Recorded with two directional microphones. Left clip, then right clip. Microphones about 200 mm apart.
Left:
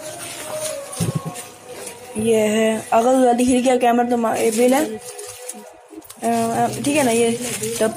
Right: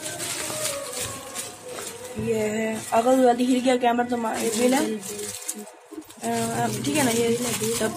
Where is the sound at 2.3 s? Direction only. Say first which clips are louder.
Left 10 dB; 35° left (ahead or behind).